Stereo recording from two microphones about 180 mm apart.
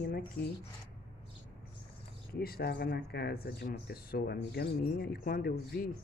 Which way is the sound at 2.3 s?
55° left (ahead or behind).